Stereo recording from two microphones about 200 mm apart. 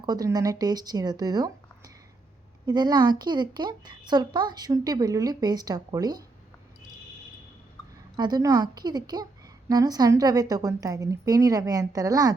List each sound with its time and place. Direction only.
0.0 s a woman's voice: 20° right (ahead or behind)
8.1 s a woman's voice: 20° right (ahead or behind)